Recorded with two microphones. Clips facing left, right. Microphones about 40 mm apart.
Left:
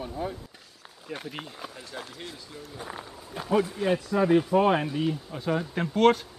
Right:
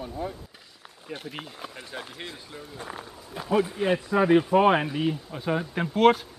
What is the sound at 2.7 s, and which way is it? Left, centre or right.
Speech, centre.